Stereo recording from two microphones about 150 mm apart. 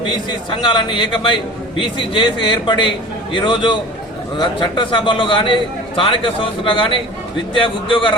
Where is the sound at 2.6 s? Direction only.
30° left (ahead or behind).